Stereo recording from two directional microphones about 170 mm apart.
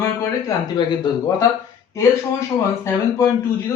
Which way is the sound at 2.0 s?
15° left (ahead or behind).